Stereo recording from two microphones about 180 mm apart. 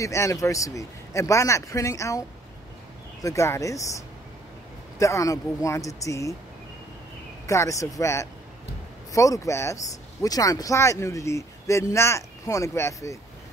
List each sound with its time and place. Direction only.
0.0 s speech: 15° left (ahead or behind)
7.4 s speech: 15° left (ahead or behind)